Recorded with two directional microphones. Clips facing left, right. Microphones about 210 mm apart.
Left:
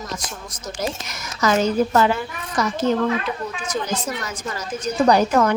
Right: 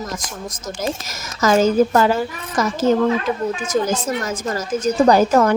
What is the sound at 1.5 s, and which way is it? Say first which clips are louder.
A woman's voice: right 4 dB; 45° right (ahead or behind).